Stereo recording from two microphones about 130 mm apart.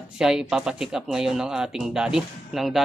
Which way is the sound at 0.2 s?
5° right (ahead or behind).